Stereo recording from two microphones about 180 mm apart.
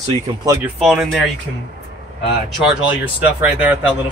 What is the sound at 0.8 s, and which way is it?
Speech, centre (ahead or behind).